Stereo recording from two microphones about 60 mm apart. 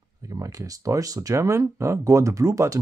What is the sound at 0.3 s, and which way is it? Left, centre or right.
Speech, right.